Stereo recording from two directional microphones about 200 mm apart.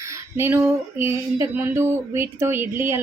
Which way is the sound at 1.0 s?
15° right (ahead or behind).